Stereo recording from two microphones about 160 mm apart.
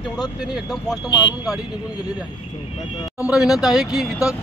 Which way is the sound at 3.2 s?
5° right (ahead or behind).